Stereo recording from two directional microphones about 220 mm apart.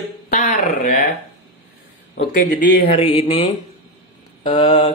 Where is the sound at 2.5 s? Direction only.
50° left (ahead or behind).